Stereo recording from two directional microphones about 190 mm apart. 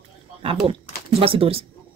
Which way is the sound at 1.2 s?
30° right (ahead or behind).